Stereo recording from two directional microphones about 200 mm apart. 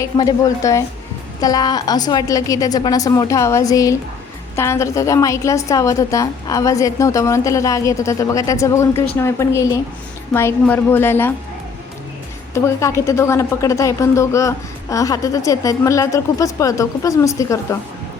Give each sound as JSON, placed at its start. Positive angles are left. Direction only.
{"t": 0.0, "sound": "a woman's voice", "side_deg": 15}
{"t": 12.5, "sound": "a woman's voice", "side_deg": 15}